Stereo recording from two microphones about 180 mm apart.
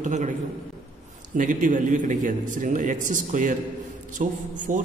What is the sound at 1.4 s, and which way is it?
A man's voice, 45° right (ahead or behind).